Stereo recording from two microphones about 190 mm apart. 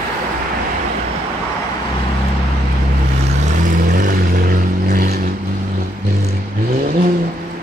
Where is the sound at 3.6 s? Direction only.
45° right (ahead or behind).